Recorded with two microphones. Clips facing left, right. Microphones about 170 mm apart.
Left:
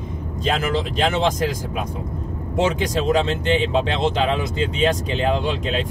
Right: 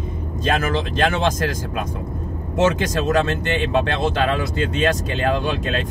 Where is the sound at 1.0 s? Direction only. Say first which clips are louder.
Even; 15° left (ahead or behind).